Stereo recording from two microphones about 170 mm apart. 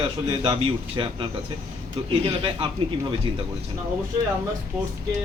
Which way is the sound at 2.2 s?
35° right (ahead or behind).